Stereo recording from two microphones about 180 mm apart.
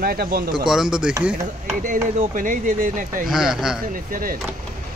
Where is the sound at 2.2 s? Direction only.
45° right (ahead or behind).